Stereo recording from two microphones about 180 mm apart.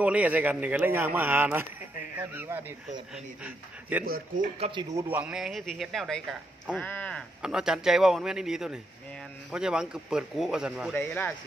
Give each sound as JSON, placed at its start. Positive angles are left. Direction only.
{"t": 0.0, "sound": "speech", "side_deg": -10}
{"t": 4.0, "sound": "speech", "side_deg": -55}
{"t": 4.6, "sound": "speech", "side_deg": -30}
{"t": 4.9, "sound": "speech", "side_deg": -10}
{"t": 7.4, "sound": "speech", "side_deg": -5}
{"t": 10.9, "sound": "speech", "side_deg": 10}